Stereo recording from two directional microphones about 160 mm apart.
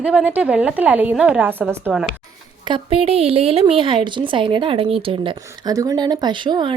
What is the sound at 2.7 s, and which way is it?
Speech, 35° right (ahead or behind).